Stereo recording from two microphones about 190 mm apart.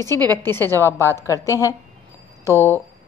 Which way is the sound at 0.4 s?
10° left (ahead or behind).